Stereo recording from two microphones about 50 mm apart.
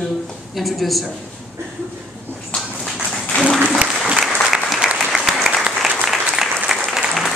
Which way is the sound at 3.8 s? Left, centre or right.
Right.